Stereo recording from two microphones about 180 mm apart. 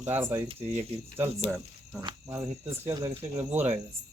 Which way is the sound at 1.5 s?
Centre (ahead or behind).